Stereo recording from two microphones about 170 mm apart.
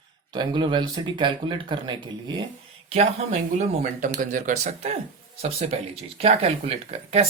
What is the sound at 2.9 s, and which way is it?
Speech, 40° right (ahead or behind).